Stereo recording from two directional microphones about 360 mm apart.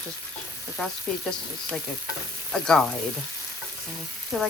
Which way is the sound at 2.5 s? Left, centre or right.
Centre.